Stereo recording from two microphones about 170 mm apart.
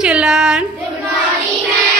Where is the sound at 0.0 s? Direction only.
5° right (ahead or behind).